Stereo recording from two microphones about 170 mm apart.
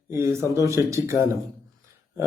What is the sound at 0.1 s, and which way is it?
Speech, 15° right (ahead or behind).